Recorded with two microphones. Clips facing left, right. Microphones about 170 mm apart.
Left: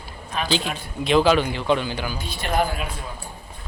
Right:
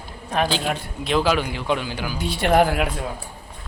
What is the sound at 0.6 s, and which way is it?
Speech, 60° right (ahead or behind).